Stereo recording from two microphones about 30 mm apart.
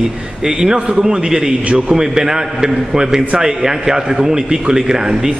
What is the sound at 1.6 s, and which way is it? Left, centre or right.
Speech, right.